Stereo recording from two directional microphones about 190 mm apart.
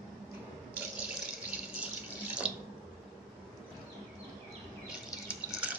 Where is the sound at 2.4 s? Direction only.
5° right (ahead or behind).